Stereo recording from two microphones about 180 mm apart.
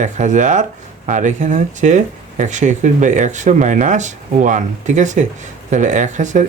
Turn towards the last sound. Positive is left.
turn(degrees=-45)  # may be behind; listen again after turning